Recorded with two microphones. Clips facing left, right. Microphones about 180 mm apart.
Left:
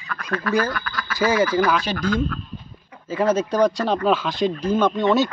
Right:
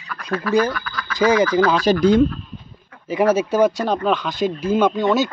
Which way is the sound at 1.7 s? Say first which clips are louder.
Right 6 dB; 40° right (ahead or behind).